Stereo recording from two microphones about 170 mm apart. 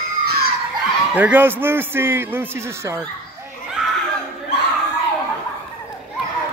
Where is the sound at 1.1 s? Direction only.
10° right (ahead or behind).